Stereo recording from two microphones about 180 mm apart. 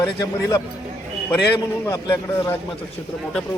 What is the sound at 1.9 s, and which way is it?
Speech, 15° left (ahead or behind).